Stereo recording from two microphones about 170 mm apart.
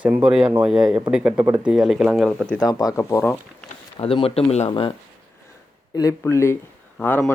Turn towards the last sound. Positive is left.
turn(degrees=10)  # may be behind; listen again after turning